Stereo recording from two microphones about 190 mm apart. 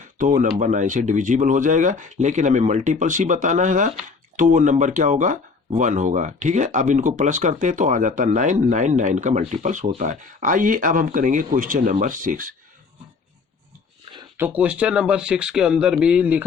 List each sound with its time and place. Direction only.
0.0 s speech: 45° right (ahead or behind)
14.3 s speech: 10° right (ahead or behind)